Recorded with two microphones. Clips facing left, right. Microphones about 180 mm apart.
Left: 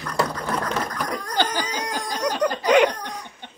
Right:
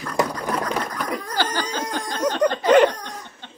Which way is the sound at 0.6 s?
5° right (ahead or behind).